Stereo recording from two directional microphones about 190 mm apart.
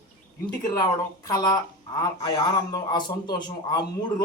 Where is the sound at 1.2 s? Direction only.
20° left (ahead or behind).